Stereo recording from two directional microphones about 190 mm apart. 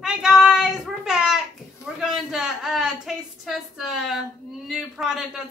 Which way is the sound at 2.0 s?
5° right (ahead or behind).